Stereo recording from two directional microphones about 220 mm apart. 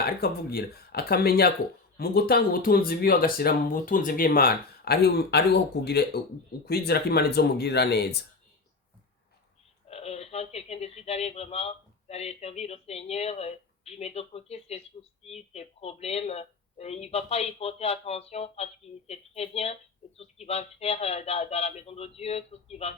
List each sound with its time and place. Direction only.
0.0 s speech: 45° left (ahead or behind)
9.9 s speech: 30° left (ahead or behind)